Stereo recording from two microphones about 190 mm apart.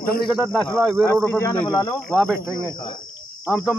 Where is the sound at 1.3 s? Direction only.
10° left (ahead or behind).